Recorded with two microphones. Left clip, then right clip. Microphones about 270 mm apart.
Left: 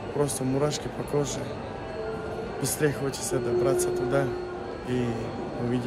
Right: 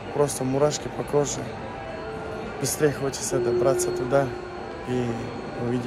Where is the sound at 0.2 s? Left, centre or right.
Centre.